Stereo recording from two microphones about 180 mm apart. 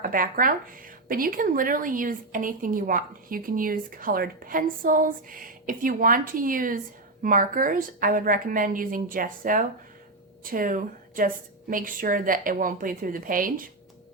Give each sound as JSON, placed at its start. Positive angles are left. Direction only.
{"t": 0.1, "sound": "a woman's voice", "side_deg": -50}